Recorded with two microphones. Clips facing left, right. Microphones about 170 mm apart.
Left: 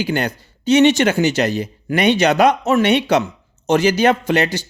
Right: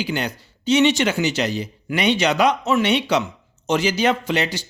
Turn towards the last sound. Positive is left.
turn(degrees=50)  # may be behind; listen again after turning